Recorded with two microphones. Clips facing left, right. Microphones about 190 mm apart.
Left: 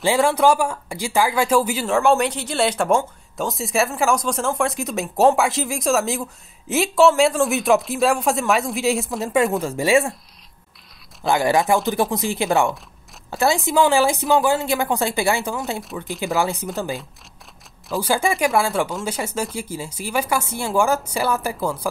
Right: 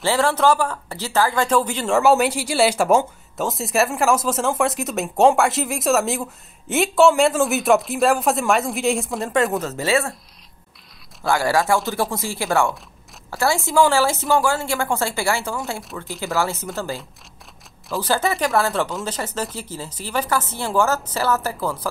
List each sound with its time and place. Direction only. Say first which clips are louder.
0.0 s a woman's voice: left 2 dB; 15° left (ahead or behind)
2.0 s speech: right 2 dB; 5° right (ahead or behind)
9.7 s a woman's voice: left 3 dB; 15° left (ahead or behind)
11.2 s a woman's voice: left 1 dB; 20° left (ahead or behind)